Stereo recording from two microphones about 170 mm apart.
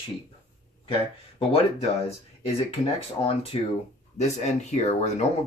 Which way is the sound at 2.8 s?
35° left (ahead or behind).